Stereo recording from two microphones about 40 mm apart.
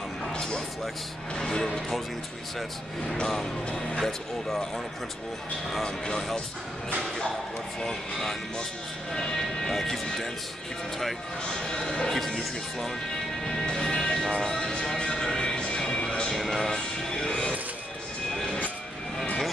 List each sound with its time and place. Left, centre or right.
0.3 s music: left
1.3 s a sound: centre
3.3 s speech: centre
5.9 s speech: centre
9.1 s speech: centre
11.7 s speech: centre
13.5 s music: centre
16.3 s music: centre